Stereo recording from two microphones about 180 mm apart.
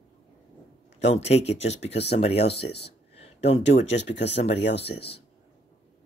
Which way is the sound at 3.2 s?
35° left (ahead or behind).